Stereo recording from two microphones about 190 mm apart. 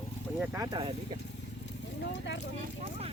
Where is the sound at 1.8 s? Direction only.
70° left (ahead or behind).